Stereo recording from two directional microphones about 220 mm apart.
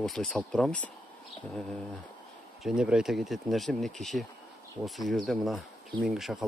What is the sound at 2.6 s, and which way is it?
Speech, 5° right (ahead or behind).